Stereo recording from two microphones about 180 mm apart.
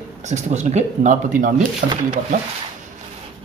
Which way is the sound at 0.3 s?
40° right (ahead or behind).